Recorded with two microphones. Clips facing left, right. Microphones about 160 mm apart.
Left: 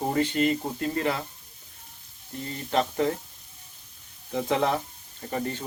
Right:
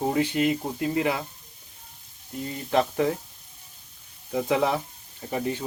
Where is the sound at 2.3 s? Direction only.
10° right (ahead or behind).